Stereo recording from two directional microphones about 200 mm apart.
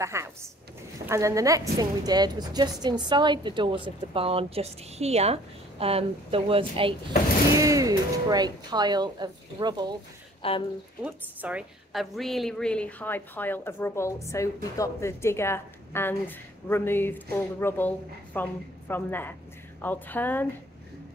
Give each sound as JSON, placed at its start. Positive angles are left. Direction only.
{"t": 0.0, "sound": "a woman's voice", "side_deg": -15}
{"t": 7.5, "sound": "a woman's voice", "side_deg": -15}
{"t": 10.4, "sound": "speech", "side_deg": 30}
{"t": 11.1, "sound": "a woman's voice", "side_deg": -5}